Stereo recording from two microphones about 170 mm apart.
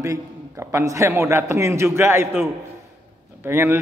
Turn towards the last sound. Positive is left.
turn(degrees=-15)  # may be behind; listen again after turning